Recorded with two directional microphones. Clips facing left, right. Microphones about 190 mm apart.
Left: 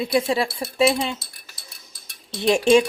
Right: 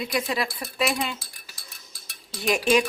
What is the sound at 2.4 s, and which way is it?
Speech, 30° left (ahead or behind).